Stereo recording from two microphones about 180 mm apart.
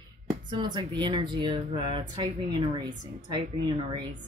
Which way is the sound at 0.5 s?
25° right (ahead or behind).